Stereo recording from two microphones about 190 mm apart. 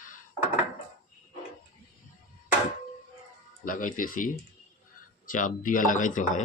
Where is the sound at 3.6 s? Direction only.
45° left (ahead or behind).